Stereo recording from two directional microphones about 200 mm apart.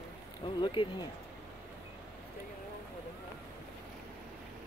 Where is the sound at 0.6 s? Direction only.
25° left (ahead or behind).